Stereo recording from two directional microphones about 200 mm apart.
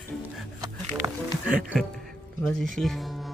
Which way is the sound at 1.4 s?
5° right (ahead or behind).